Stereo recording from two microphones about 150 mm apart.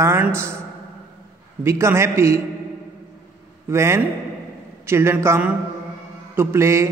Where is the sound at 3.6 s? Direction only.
20° right (ahead or behind).